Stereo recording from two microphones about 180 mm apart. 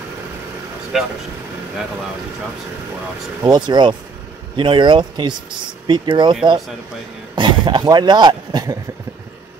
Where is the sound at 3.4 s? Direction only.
25° right (ahead or behind).